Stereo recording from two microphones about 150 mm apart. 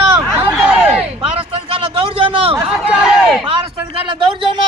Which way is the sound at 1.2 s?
40° right (ahead or behind).